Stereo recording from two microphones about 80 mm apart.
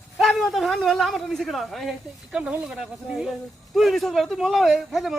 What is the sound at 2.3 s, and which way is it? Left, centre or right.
Speech, centre.